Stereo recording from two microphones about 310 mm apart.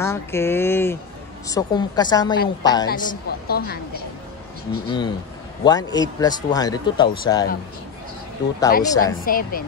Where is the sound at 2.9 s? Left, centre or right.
Left.